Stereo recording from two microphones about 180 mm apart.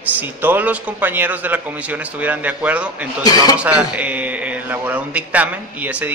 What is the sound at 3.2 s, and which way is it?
Speech, 20° left (ahead or behind).